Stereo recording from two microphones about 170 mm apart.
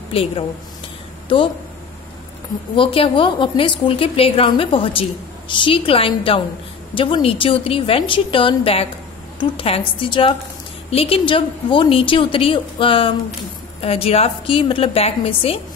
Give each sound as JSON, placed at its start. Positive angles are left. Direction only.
{"t": 0.1, "sound": "a woman's voice", "side_deg": 35}
{"t": 2.7, "sound": "a woman's voice", "side_deg": 30}